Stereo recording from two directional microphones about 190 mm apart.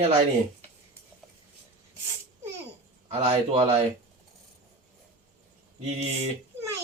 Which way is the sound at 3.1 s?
35° right (ahead or behind).